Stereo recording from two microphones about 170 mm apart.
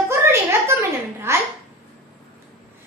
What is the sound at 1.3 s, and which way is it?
Speech, 15° right (ahead or behind).